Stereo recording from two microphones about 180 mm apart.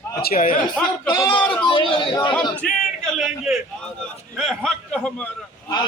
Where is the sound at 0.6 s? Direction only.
5° left (ahead or behind).